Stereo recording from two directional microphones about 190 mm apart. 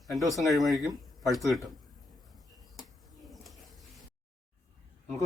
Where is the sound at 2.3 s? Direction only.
Centre (ahead or behind).